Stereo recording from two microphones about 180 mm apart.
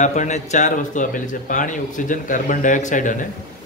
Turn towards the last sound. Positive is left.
turn(degrees=45)  # may be behind; listen again after turning